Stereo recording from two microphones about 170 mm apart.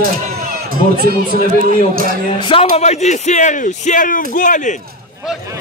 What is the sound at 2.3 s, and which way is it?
Speech, 30° left (ahead or behind).